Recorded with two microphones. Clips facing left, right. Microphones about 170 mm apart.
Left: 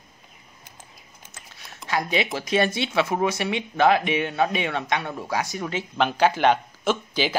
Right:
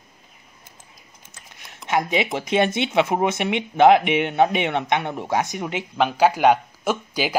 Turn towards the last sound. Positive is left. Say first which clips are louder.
# even
turn(degrees=-10)  # may be behind; listen again after turning